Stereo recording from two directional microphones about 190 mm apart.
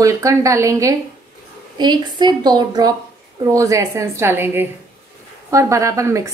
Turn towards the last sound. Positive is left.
turn(degrees=-15)  # may be behind; listen again after turning